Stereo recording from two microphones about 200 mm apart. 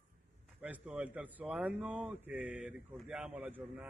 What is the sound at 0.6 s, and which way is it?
A man's voice, 5° right (ahead or behind).